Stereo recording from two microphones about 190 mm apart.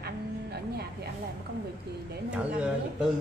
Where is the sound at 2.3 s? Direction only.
5° right (ahead or behind).